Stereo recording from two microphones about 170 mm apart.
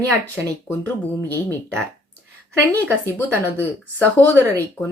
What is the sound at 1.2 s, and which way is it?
Speech, 15° left (ahead or behind).